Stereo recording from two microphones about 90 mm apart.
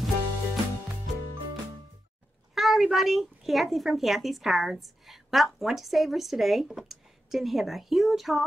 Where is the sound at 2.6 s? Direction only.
Centre (ahead or behind).